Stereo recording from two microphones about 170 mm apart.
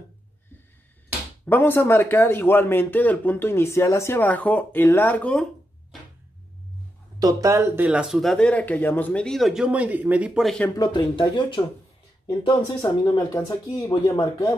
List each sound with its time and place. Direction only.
1.4 s speech: 10° left (ahead or behind)
7.2 s speech: 20° right (ahead or behind); by 10.7 s centre (ahead or behind)
10.8 s speech: 25° left (ahead or behind)